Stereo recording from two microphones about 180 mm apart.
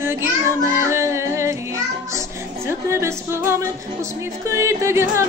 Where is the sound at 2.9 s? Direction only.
15° right (ahead or behind).